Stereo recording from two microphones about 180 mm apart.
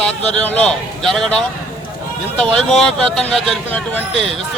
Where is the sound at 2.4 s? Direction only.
5° left (ahead or behind).